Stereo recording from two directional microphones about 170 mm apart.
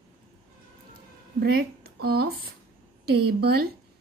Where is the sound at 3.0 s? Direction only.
70° right (ahead or behind).